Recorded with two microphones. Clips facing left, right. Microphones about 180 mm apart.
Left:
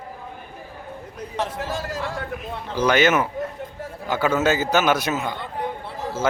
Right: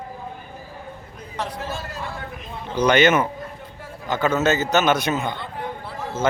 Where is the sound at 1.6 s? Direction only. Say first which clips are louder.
Left 3 dB; 90° left.